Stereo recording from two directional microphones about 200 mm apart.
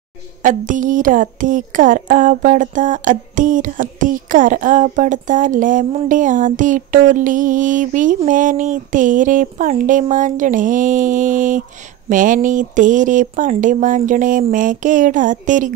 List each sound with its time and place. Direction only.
0.4 s speech: 40° right (ahead or behind)